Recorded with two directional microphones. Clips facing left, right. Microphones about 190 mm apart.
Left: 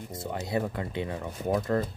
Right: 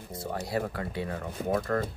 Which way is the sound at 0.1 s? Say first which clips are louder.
Left 1 dB; 20° left (ahead or behind).